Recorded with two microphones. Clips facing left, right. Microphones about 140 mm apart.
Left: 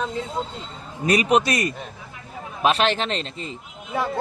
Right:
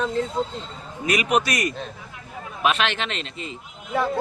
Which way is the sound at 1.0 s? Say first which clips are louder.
Left 3 dB; 35° left (ahead or behind).